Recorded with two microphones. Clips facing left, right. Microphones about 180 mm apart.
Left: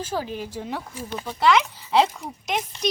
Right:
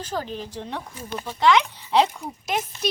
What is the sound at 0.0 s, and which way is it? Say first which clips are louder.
Speech: left 1 dB; 10° left (ahead or behind).